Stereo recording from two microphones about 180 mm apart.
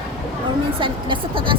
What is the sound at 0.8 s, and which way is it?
Speech, 30° right (ahead or behind).